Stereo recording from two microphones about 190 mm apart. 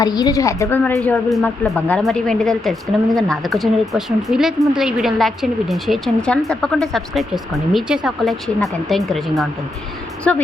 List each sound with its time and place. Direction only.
0.0 s a woman's voice: 20° left (ahead or behind)
1.0 s a woman's voice: centre (ahead or behind)